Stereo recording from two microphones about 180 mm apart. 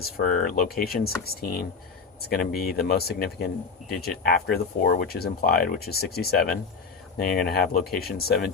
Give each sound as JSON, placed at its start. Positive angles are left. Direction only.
{"t": 0.0, "sound": "speech", "side_deg": 50}